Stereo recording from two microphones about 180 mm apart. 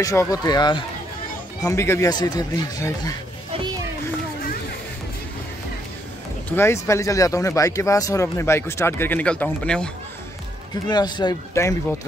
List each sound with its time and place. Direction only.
0.0 s speech: 20° left (ahead or behind)
6.5 s speech: 15° left (ahead or behind)
10.9 s speech: 25° left (ahead or behind)